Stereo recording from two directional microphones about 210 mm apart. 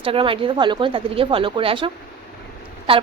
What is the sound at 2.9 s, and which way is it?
Speech, 25° right (ahead or behind).